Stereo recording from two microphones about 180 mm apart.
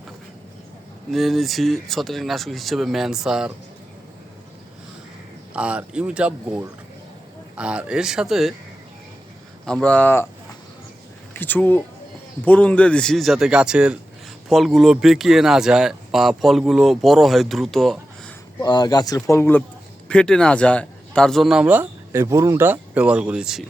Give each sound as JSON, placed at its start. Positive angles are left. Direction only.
{"t": 1.1, "sound": "speech", "side_deg": 0}
{"t": 5.5, "sound": "speech", "side_deg": -5}
{"t": 9.6, "sound": "speech", "side_deg": 5}
{"t": 11.3, "sound": "speech", "side_deg": 10}
{"t": 18.6, "sound": "speech", "side_deg": 20}